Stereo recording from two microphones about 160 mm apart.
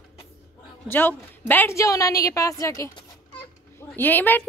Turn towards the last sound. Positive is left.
turn(degrees=10)  # may be behind; listen again after turning